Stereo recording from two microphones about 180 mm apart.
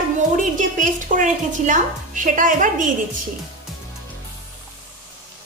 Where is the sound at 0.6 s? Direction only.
45° right (ahead or behind).